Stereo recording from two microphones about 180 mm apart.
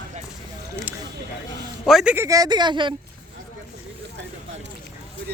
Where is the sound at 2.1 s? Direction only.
15° right (ahead or behind).